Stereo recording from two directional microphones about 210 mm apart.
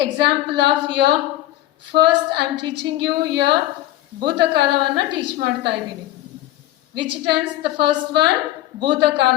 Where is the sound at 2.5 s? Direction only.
20° right (ahead or behind).